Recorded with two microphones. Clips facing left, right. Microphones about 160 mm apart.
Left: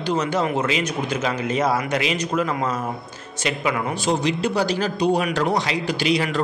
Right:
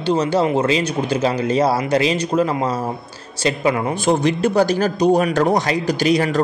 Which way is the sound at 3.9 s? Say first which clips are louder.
Right 4 dB; 50° right (ahead or behind).